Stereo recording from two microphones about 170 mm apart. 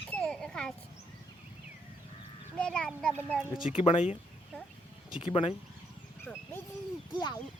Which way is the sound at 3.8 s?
35° left (ahead or behind).